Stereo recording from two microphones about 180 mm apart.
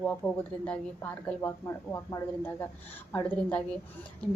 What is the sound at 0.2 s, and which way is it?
A woman's voice, 10° left (ahead or behind).